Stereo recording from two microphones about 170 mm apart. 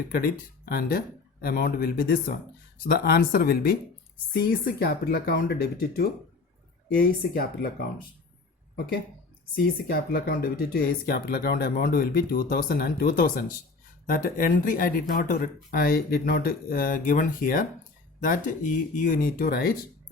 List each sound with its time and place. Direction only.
0.1 s speech: 55° left (ahead or behind)
6.8 s speech: 65° left (ahead or behind)
9.6 s speech: 65° left (ahead or behind)